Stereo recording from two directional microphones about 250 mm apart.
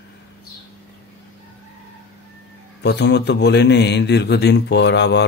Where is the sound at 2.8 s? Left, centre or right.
Left.